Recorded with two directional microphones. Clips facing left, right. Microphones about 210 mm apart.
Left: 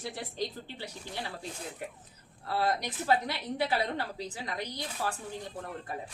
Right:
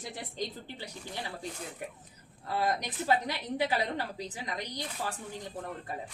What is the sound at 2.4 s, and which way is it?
A woman's voice, 15° right (ahead or behind).